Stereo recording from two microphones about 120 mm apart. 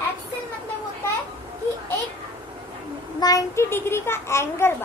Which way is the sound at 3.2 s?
30° left (ahead or behind).